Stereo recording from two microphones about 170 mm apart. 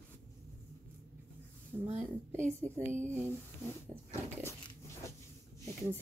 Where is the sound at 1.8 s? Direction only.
45° right (ahead or behind).